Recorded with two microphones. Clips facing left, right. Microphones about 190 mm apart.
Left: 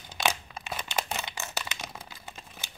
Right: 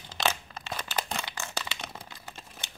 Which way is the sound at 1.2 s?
20° left (ahead or behind).